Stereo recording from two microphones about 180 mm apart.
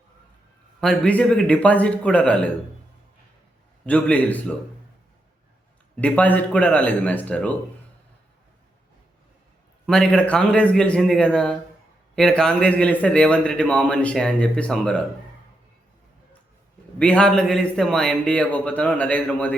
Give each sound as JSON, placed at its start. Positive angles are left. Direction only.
{"t": 0.8, "sound": "a man's voice", "side_deg": 5}
{"t": 3.8, "sound": "a man's voice", "side_deg": 10}
{"t": 6.0, "sound": "a man's voice", "side_deg": 10}
{"t": 9.8, "sound": "a man's voice", "side_deg": 5}
{"t": 17.0, "sound": "a man's voice", "side_deg": 5}